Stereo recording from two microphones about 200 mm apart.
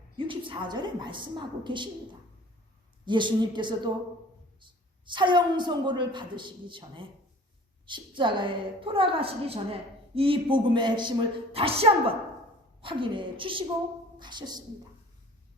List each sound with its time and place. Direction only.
0.3 s a woman's voice: 25° right (ahead or behind)
3.1 s a woman's voice: 25° right (ahead or behind)